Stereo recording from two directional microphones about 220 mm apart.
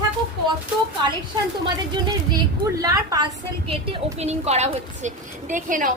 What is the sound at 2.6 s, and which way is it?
Speech, 15° right (ahead or behind).